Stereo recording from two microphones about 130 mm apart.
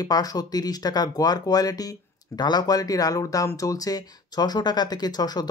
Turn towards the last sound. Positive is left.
turn(degrees=30)  # may be behind; listen again after turning